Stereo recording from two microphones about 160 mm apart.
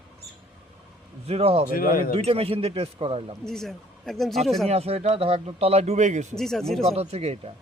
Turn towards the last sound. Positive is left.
turn(degrees=-40)  # may be behind; listen again after turning